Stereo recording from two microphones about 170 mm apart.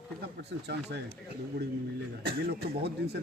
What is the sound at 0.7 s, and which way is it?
Speech, 85° right.